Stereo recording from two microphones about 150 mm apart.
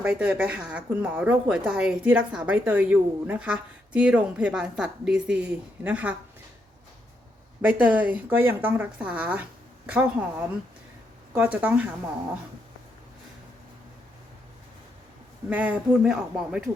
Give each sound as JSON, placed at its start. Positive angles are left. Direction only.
{"t": 0.0, "sound": "a woman's voice", "side_deg": -10}
{"t": 7.6, "sound": "a woman's voice", "side_deg": -10}
{"t": 15.4, "sound": "a woman's voice", "side_deg": -10}